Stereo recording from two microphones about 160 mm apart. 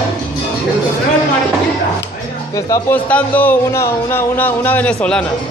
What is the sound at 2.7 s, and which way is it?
Speech, 10° left (ahead or behind).